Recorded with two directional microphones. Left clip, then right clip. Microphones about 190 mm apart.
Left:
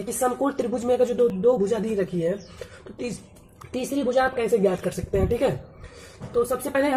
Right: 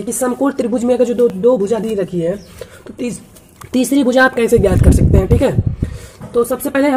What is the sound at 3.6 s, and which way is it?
Speech, 40° right (ahead or behind).